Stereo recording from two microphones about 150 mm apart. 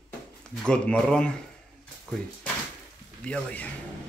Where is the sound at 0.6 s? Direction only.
5° left (ahead or behind).